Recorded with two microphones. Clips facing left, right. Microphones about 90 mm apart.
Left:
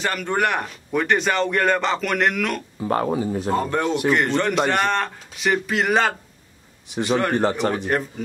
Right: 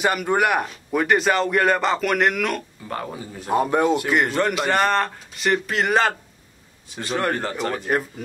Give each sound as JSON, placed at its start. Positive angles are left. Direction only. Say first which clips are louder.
{"t": 0.0, "sound": "speech", "louder": "right 2 dB", "side_deg": -10}
{"t": 2.8, "sound": "speech", "louder": "left 9 dB", "side_deg": 35}
{"t": 3.4, "sound": "speech", "louder": "right 6 dB", "side_deg": -15}
{"t": 6.9, "sound": "a man's voice", "louder": "left 3 dB", "side_deg": 20}